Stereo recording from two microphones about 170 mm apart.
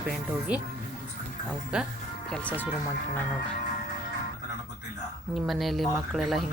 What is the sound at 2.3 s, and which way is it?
Speech, 10° left (ahead or behind).